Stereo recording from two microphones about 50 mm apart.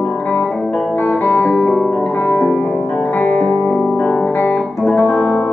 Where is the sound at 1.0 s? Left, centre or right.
Left.